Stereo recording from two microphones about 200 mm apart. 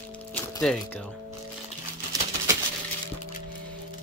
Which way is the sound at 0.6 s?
5° left (ahead or behind).